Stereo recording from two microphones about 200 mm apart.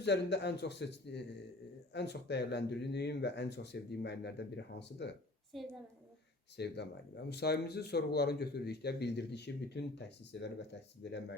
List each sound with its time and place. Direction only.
0.0 s speech: 60° left (ahead or behind)
5.5 s a woman's voice: centre (ahead or behind)
6.6 s speech: 55° left (ahead or behind)